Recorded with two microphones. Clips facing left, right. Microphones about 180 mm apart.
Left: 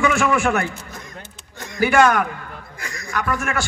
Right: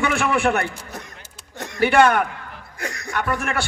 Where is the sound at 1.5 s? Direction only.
65° right (ahead or behind).